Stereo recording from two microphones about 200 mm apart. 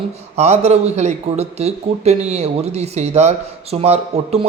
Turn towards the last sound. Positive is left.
turn(degrees=-30)  # may be behind; listen again after turning